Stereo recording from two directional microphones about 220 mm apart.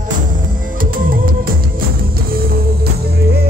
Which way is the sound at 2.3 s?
40° right (ahead or behind).